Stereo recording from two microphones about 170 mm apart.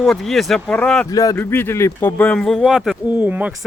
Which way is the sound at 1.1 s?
20° left (ahead or behind).